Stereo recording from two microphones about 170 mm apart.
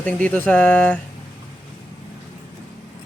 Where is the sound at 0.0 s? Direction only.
10° left (ahead or behind).